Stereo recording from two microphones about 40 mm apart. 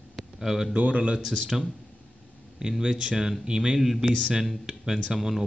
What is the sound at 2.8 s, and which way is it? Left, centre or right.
A man's voice, centre.